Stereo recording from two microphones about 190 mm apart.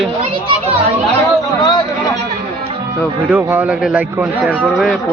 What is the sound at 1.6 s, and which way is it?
Speech, 25° left (ahead or behind).